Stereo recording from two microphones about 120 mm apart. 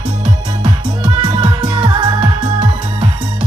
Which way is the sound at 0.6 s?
40° right (ahead or behind).